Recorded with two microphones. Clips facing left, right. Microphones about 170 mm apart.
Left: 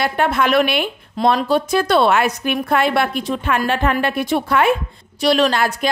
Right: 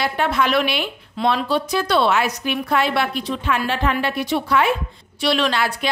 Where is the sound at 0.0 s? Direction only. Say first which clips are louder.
Left 2 dB; 50° left (ahead or behind).